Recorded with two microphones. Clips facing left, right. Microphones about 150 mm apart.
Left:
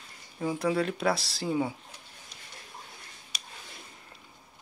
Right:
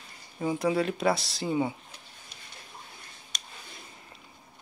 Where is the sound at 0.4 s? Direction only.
Centre (ahead or behind).